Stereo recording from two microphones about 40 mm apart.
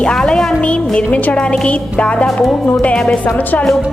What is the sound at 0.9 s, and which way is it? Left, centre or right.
Speech, left.